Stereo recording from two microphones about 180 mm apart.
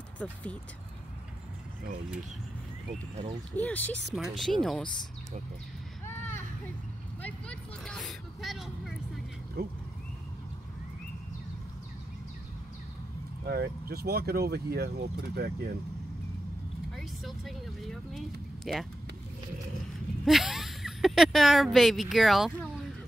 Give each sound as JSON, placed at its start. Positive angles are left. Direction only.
{"t": 0.2, "sound": "speech", "side_deg": 5}
{"t": 3.5, "sound": "speech", "side_deg": 10}
{"t": 6.0, "sound": "a sound", "side_deg": 15}
{"t": 7.2, "sound": "vehicle", "side_deg": 5}
{"t": 9.6, "sound": "speech", "side_deg": -65}
{"t": 13.5, "sound": "speech", "side_deg": -60}
{"t": 16.9, "sound": "vehicle", "side_deg": 0}
{"t": 18.7, "sound": "speech", "side_deg": 0}
{"t": 20.2, "sound": "speech", "side_deg": 0}